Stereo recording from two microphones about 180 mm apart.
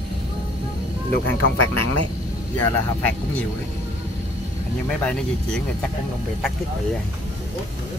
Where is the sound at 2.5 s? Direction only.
10° left (ahead or behind).